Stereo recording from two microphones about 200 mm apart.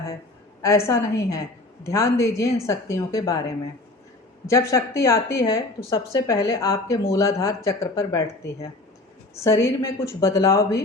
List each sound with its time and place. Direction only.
0.6 s speech: 15° left (ahead or behind)
4.4 s speech: 15° left (ahead or behind)
9.3 s speech: 15° left (ahead or behind)